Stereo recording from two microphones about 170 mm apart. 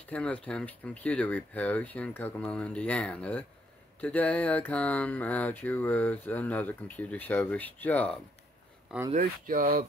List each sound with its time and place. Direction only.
0.0 s mantra: 5° left (ahead or behind)
9.1 s speech: 55° right (ahead or behind)